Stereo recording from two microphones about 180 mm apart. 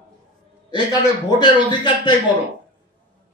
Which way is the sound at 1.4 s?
25° left (ahead or behind).